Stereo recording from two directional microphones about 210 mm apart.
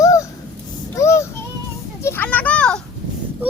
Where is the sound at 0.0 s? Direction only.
15° left (ahead or behind).